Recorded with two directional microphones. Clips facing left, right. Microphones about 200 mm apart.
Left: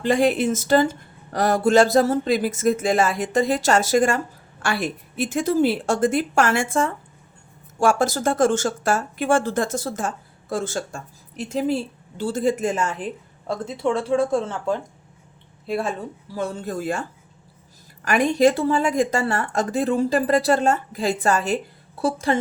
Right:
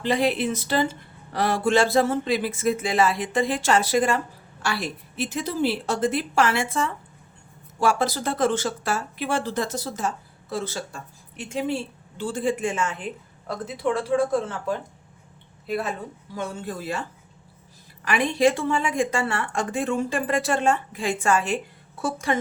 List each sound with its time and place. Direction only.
0.0 s speech: 45° left (ahead or behind)
13.7 s a woman's voice: 25° left (ahead or behind)